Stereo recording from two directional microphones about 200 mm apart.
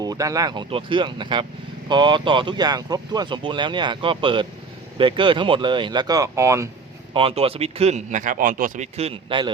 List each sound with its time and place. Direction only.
0.0 s speech: 15° right (ahead or behind)
7.1 s speech: 25° right (ahead or behind)